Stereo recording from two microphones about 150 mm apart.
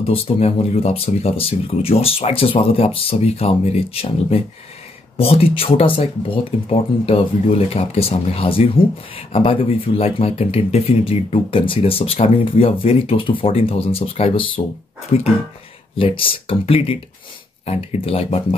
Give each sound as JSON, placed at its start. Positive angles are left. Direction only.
{"t": 0.0, "sound": "speech", "side_deg": 40}